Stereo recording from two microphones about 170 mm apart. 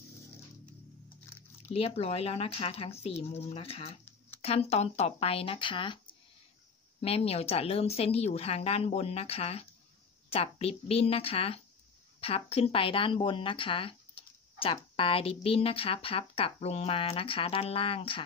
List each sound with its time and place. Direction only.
1.7 s a woman's voice: 35° left (ahead or behind)
7.0 s a woman's voice: 35° left (ahead or behind)